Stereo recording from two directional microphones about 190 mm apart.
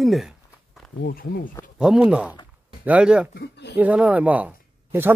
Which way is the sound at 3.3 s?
60° left (ahead or behind).